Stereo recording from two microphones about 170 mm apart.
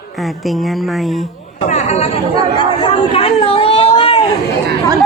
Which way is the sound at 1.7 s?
40° left (ahead or behind).